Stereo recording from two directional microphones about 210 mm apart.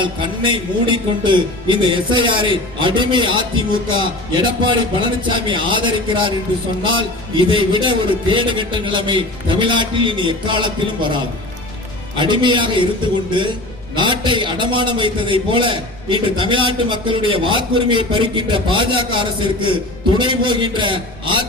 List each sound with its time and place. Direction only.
0.0 s a man's voice: 25° right (ahead or behind)
7.3 s a man's voice: 20° right (ahead or behind)
13.9 s a man's voice: 20° right (ahead or behind)